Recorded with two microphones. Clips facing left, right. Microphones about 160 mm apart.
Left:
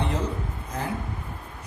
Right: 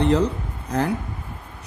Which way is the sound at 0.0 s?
80° right.